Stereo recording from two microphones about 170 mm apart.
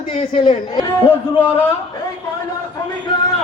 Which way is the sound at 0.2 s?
40° left (ahead or behind).